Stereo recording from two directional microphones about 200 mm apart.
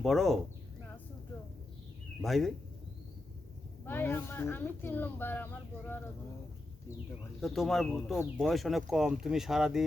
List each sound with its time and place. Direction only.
0.0 s speech: centre (ahead or behind)
2.2 s speech: centre (ahead or behind)
3.8 s speech: 10° left (ahead or behind)
7.4 s speech: centre (ahead or behind)